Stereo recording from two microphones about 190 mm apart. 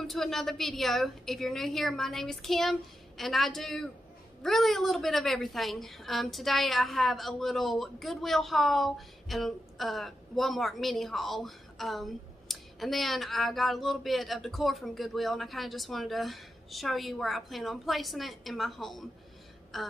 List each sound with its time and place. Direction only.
0.0 s a woman's voice: centre (ahead or behind)